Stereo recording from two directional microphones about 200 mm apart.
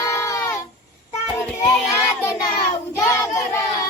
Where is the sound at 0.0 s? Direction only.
15° left (ahead or behind).